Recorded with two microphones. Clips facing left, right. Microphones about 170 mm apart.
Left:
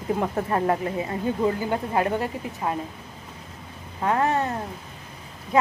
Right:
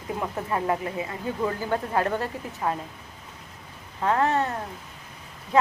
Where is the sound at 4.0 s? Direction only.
15° left (ahead or behind).